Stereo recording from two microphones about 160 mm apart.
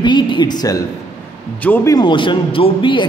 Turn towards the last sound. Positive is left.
turn(degrees=30)  # may be behind; listen again after turning